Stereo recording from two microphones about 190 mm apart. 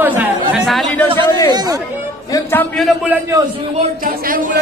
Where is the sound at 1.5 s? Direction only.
20° right (ahead or behind).